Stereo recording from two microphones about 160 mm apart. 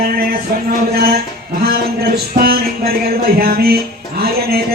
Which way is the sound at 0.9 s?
75° right (ahead or behind).